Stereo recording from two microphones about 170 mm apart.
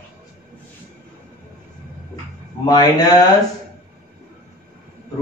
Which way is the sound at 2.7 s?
25° left (ahead or behind).